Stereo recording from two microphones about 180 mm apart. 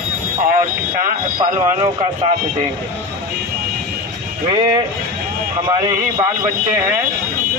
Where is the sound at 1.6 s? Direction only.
30° right (ahead or behind).